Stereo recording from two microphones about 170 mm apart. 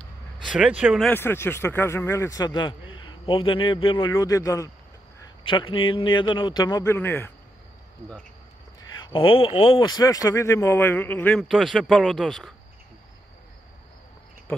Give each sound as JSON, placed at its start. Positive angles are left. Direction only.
{"t": 0.5, "sound": "speech", "side_deg": -5}
{"t": 1.0, "sound": "speech", "side_deg": 15}
{"t": 5.4, "sound": "speech", "side_deg": 30}
{"t": 9.0, "sound": "speech", "side_deg": 30}